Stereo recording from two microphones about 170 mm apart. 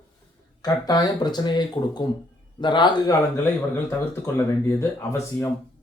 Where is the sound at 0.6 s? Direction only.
20° left (ahead or behind).